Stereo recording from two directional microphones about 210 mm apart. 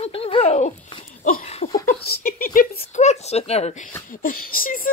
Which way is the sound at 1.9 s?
45° left (ahead or behind).